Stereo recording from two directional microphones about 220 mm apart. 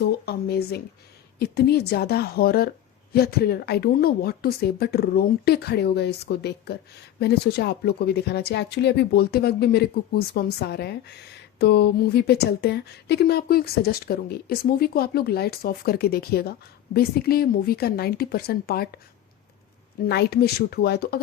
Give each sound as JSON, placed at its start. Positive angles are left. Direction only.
{"t": 0.0, "sound": "a woman's voice", "side_deg": 45}
{"t": 20.1, "sound": "a woman's voice", "side_deg": 50}